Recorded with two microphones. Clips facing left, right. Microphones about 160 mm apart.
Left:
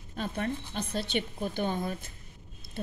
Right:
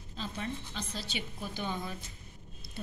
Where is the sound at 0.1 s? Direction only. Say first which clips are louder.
Left 6 dB; 55° left (ahead or behind).